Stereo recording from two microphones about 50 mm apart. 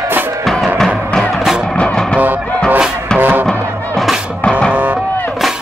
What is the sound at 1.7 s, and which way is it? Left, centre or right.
Music, left.